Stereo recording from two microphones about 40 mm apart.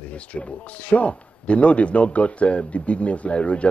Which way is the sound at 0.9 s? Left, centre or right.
Left.